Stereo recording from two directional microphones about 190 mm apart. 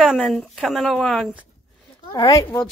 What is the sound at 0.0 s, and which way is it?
Speech, centre (ahead or behind).